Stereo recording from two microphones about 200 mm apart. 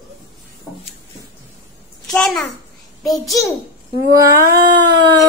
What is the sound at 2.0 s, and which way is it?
A child's voice, centre (ahead or behind).